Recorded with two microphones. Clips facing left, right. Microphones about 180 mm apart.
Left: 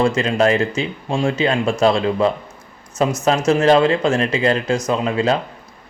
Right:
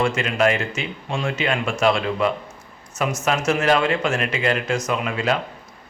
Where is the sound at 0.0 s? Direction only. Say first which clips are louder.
Left 4 dB; 35° left (ahead or behind).